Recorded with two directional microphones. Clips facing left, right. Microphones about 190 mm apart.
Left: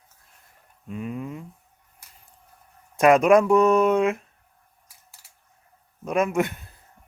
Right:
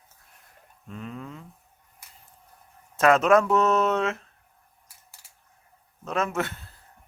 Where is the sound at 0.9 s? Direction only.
10° left (ahead or behind).